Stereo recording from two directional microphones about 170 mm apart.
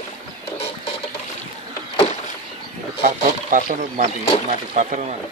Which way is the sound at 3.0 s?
50° right (ahead or behind).